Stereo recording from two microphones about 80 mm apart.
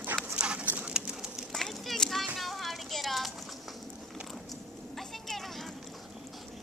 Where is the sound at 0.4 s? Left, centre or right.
Centre.